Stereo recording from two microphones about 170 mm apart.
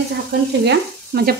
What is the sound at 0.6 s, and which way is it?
Stir, 70° right (ahead or behind).